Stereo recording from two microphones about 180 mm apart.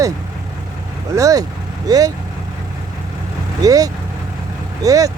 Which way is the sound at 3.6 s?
20° right (ahead or behind).